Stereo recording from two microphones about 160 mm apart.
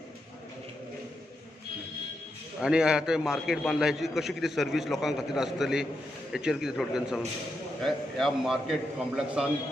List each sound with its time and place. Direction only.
2.6 s a man's voice: 5° right (ahead or behind)